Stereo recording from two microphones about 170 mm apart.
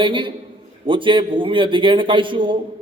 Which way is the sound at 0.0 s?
30° right (ahead or behind).